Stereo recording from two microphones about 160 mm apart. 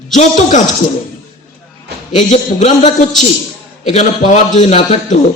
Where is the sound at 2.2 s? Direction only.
50° left (ahead or behind).